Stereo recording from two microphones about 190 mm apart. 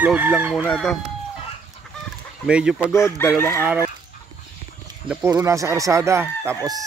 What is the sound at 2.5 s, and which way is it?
Speech, 5° right (ahead or behind).